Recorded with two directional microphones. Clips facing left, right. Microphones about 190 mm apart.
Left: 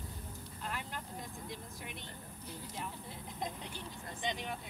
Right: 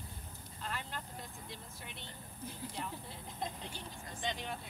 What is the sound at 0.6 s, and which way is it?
Speech, 10° left (ahead or behind).